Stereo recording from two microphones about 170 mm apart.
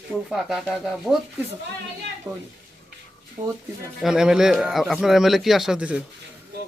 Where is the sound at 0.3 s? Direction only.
Centre (ahead or behind).